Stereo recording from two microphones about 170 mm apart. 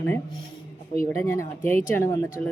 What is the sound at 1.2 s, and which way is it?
Speech, 15° left (ahead or behind).